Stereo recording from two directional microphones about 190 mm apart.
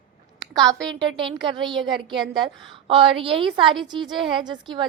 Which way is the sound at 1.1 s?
25° right (ahead or behind).